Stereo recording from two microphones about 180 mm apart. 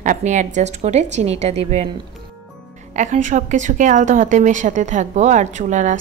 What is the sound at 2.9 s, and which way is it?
A woman's voice, 45° right (ahead or behind).